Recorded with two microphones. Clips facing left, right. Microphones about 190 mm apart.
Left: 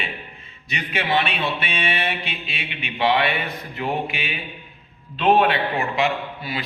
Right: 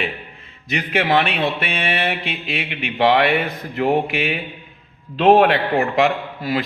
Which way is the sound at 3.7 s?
65° right (ahead or behind).